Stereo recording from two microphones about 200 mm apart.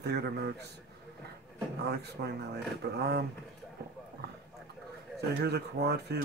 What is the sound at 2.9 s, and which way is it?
Speech, 55° right (ahead or behind).